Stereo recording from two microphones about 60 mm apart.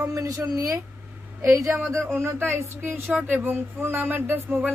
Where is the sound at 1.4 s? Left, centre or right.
Right.